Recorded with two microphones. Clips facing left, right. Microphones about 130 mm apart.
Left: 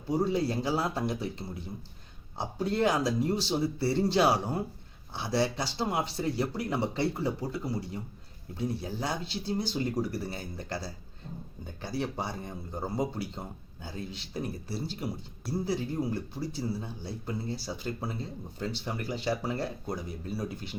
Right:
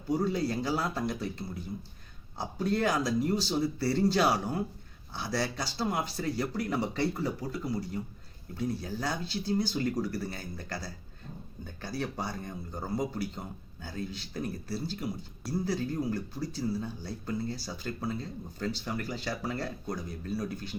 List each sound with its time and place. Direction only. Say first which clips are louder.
0.1 s speech: left 1 dB; 25° left (ahead or behind)